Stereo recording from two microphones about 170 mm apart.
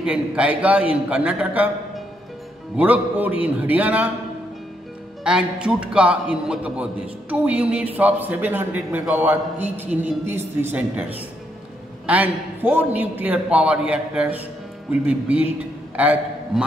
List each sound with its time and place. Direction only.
0.0 s a man's voice: 5° right (ahead or behind)
5.2 s a man's voice: 5° right (ahead or behind)